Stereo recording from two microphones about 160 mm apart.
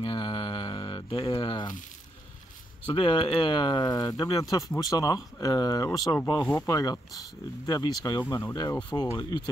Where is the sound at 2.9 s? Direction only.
30° left (ahead or behind).